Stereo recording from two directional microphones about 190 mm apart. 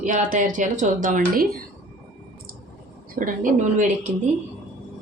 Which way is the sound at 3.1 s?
45° right (ahead or behind).